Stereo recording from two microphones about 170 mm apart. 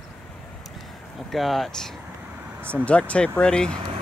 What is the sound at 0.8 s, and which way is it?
Speech, centre (ahead or behind).